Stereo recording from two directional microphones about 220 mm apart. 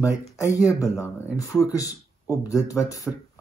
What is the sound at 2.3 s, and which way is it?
Speech, 15° left (ahead or behind).